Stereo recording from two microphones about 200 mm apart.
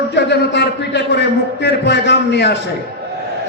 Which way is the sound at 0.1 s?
55° left (ahead or behind).